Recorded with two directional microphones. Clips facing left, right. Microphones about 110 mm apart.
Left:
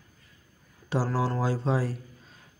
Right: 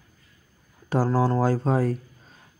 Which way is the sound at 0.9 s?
45° right (ahead or behind).